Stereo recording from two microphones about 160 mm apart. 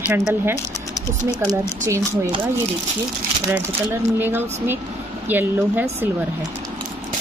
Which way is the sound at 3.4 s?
10° right (ahead or behind).